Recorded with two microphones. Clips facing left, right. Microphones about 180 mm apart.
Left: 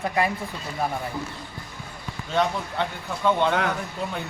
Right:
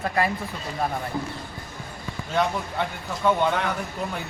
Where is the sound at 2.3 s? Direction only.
5° right (ahead or behind).